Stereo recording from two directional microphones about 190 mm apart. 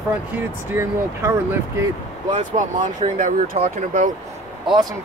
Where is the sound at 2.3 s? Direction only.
40° right (ahead or behind).